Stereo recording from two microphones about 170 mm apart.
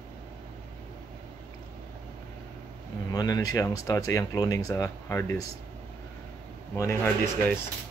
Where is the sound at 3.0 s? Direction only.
20° left (ahead or behind).